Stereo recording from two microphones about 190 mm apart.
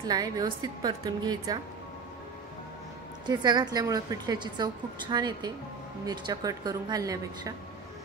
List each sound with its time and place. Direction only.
0.0 s a woman's voice: 20° right (ahead or behind)
3.3 s a woman's voice: 20° right (ahead or behind)